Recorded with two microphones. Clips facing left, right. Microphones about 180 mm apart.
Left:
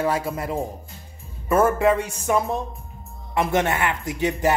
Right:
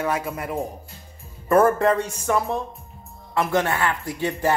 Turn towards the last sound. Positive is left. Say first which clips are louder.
# left 1 dB
turn(degrees=20)  # may be behind; listen again after turning